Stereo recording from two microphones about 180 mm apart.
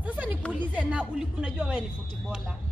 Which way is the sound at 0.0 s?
10° right (ahead or behind).